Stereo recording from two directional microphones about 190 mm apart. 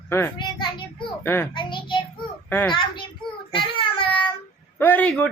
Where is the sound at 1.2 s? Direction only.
10° left (ahead or behind).